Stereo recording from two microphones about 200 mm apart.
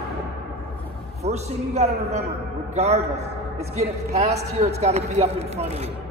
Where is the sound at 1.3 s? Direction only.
35° right (ahead or behind).